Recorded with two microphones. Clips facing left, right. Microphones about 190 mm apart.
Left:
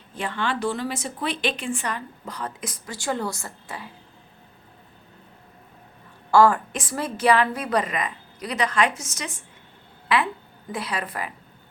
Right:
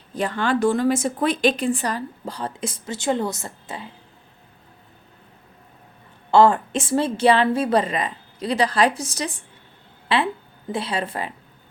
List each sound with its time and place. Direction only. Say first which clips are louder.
0.1 s a woman's voice: right 5 dB; 40° right (ahead or behind); by 3.9 s 25° right (ahead or behind)
6.3 s a woman's voice: right 2 dB; 25° right (ahead or behind)